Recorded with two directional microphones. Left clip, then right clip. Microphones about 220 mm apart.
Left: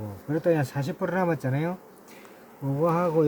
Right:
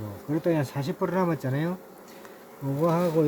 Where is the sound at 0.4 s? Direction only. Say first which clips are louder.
Left 3 dB; 15° left (ahead or behind).